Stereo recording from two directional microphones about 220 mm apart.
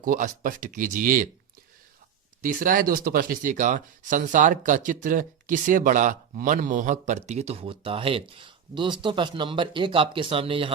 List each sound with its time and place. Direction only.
0.0 s speech: 35° right (ahead or behind)
2.4 s speech: 40° right (ahead or behind)